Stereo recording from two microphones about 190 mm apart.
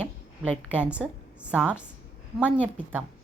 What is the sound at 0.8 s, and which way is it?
A woman's voice, 5° right (ahead or behind).